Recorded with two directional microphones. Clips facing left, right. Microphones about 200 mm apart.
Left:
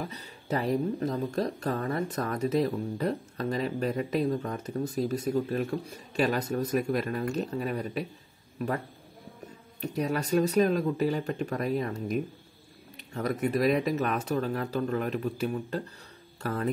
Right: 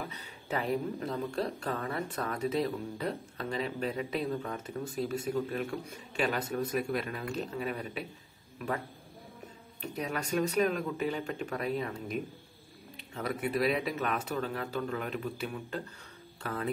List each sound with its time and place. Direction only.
0.0 s speech: 35° left (ahead or behind)